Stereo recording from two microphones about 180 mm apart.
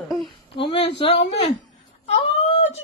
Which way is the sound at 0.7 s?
30° left (ahead or behind).